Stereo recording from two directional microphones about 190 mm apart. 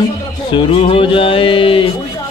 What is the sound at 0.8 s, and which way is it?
Speech, 30° left (ahead or behind).